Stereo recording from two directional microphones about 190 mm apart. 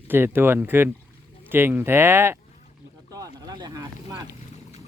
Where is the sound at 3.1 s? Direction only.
20° right (ahead or behind).